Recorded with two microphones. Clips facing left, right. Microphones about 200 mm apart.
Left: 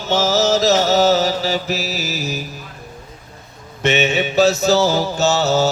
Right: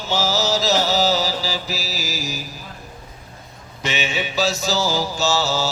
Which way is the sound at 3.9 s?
40° left (ahead or behind).